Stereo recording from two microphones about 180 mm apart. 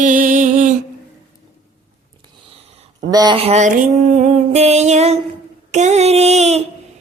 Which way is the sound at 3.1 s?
20° right (ahead or behind).